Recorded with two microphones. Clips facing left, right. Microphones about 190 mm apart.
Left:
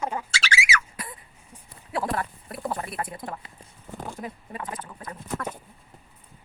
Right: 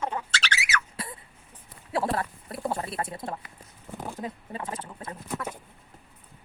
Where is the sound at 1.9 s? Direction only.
25° right (ahead or behind).